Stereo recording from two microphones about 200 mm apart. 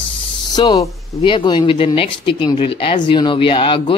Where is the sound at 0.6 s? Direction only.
20° left (ahead or behind).